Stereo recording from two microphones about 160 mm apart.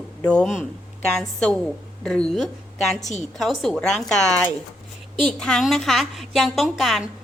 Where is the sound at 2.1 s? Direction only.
5° left (ahead or behind).